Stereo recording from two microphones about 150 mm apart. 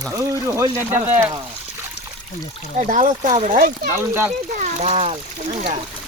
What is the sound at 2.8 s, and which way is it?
Speech, 55° right (ahead or behind).